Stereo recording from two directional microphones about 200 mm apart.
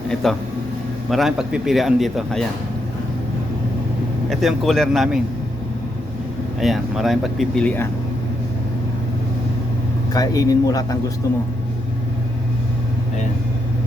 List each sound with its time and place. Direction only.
0.1 s speech: centre (ahead or behind)
4.3 s speech: centre (ahead or behind)
6.6 s speech: centre (ahead or behind)
10.2 s speech: 20° left (ahead or behind)